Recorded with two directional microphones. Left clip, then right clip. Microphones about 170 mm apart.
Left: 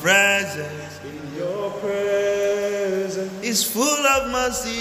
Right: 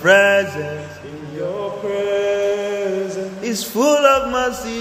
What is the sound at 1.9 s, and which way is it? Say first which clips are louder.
Chant: right 2 dB; centre (ahead or behind).